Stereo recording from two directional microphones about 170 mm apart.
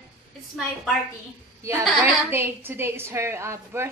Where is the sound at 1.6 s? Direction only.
15° right (ahead or behind).